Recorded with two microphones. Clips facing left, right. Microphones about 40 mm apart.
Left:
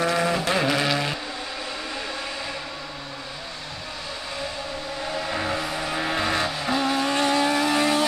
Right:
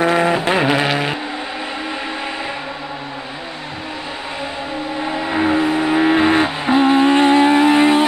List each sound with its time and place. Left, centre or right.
0.0 s vehicle: right
5.0 s vehicle: right